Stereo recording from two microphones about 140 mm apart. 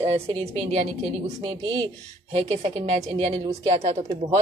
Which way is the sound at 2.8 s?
55° right (ahead or behind).